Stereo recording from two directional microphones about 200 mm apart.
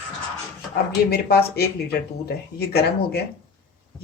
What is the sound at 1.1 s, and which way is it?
Speech, 50° left (ahead or behind).